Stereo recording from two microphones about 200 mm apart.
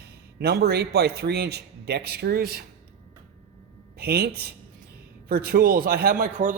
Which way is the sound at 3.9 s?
50° right (ahead or behind).